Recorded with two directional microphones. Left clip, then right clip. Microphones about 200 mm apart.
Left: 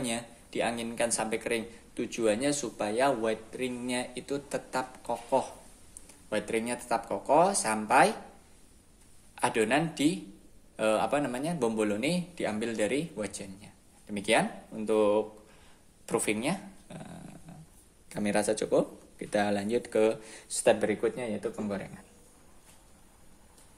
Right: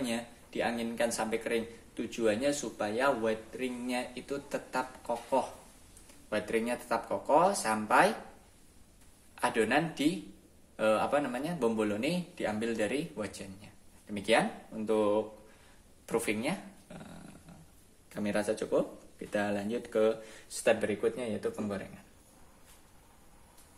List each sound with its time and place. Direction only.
0.0 s speech: 30° left (ahead or behind)
9.3 s speech: 30° left (ahead or behind)
18.1 s speech: 35° left (ahead or behind)